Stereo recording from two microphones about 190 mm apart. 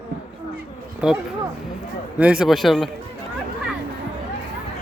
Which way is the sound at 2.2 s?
5° right (ahead or behind).